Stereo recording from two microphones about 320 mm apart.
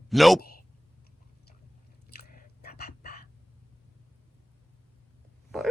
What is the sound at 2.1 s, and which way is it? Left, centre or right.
Whispering, left.